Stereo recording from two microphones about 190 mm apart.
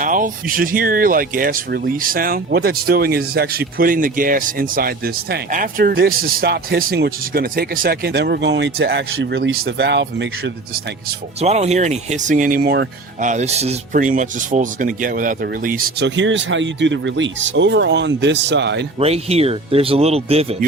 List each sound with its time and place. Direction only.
0.0 s speech: 45° right (ahead or behind); by 10.5 s 65° right (ahead or behind)
11.3 s speech: 35° right (ahead or behind); by 12.9 s 55° right (ahead or behind)
13.2 s speech: 35° right (ahead or behind)
16.0 s speech: 75° right (ahead or behind)
18.9 s speech: 35° right (ahead or behind)